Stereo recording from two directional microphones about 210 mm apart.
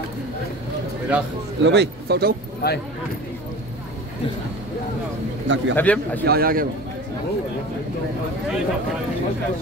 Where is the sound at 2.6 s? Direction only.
50° left (ahead or behind).